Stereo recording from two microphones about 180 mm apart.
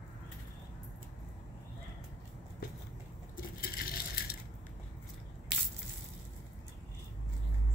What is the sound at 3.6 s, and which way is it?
Coin, 55° left (ahead or behind).